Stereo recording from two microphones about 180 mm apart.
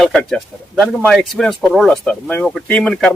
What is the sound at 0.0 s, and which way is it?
Speech, 5° left (ahead or behind).